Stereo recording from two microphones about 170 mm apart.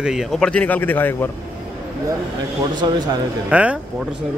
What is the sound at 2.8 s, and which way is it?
Speech, 25° right (ahead or behind).